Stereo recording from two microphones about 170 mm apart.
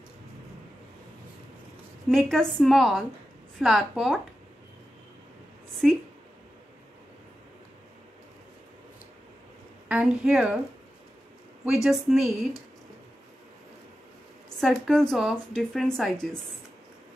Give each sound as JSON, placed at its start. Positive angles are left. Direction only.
{"t": 2.0, "sound": "a woman's voice", "side_deg": 0}
{"t": 5.8, "sound": "a woman's voice", "side_deg": -5}
{"t": 9.8, "sound": "speech", "side_deg": -5}
{"t": 11.6, "sound": "a woman's voice", "side_deg": 0}
{"t": 14.6, "sound": "a woman's voice", "side_deg": 0}